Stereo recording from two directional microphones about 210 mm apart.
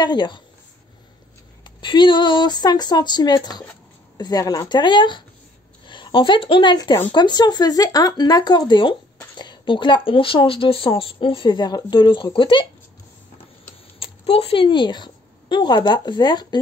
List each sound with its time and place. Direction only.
0.0 s speech: 20° left (ahead or behind)
1.6 s speech: 25° left (ahead or behind)
13.9 s a woman's voice: 25° left (ahead or behind)